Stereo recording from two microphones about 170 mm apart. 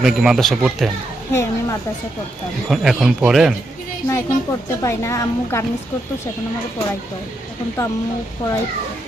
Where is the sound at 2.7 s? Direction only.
Centre (ahead or behind).